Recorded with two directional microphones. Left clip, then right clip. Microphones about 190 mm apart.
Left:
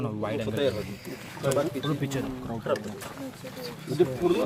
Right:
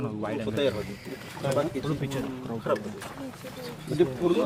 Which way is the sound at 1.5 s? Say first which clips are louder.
Left 1 dB; 55° left (ahead or behind).